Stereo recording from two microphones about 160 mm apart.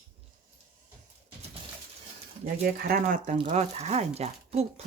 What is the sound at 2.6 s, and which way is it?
Speech, 65° right (ahead or behind).